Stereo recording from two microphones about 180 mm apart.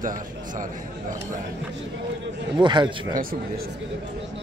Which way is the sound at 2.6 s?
25° right (ahead or behind).